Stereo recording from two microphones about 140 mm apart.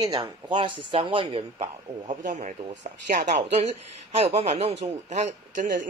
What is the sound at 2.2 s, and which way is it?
Speech, 65° right (ahead or behind).